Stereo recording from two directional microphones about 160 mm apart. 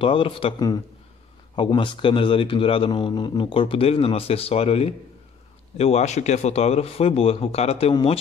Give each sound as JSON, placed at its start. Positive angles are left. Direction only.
{"t": 0.0, "sound": "speech", "side_deg": 35}